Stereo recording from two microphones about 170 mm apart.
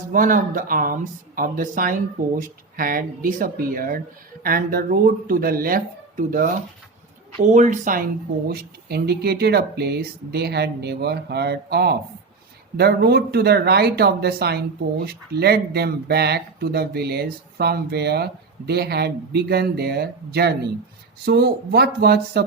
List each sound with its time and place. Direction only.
0.1 s speech: 55° right (ahead or behind)
8.4 s speech: 65° right (ahead or behind)